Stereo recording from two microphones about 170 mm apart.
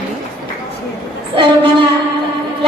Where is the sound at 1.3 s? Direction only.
30° right (ahead or behind).